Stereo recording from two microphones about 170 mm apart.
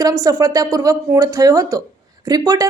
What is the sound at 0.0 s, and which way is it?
Speech, 20° right (ahead or behind).